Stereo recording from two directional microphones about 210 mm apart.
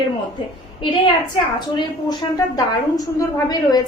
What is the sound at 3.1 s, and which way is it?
Speech, 20° left (ahead or behind).